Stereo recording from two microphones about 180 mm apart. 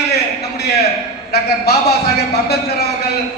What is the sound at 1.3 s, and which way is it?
A man's voice, 65° left (ahead or behind).